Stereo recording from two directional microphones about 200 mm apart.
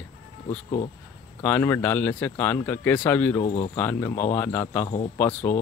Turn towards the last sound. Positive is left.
turn(degrees=5)  # may be behind; listen again after turning